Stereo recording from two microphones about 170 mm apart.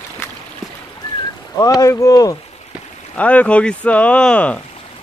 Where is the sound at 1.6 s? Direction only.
20° left (ahead or behind).